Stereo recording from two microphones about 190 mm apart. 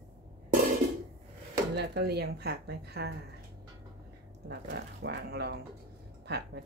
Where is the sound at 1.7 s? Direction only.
60° right (ahead or behind).